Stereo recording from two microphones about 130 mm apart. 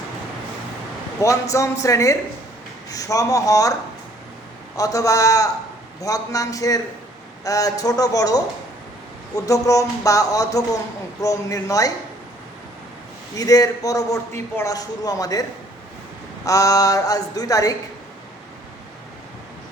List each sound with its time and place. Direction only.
1.2 s a man's voice: 25° left (ahead or behind)
4.8 s a man's voice: 25° left (ahead or behind)
13.3 s a man's voice: 30° left (ahead or behind)